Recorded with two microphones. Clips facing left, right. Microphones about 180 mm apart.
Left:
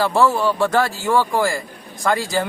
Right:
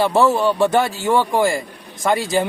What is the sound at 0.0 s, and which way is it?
A man's voice, 25° right (ahead or behind).